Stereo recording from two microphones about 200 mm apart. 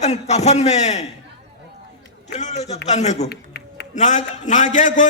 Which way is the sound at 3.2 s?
55° left (ahead or behind).